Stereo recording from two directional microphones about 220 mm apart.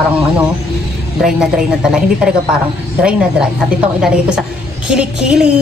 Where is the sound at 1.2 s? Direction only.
5° right (ahead or behind).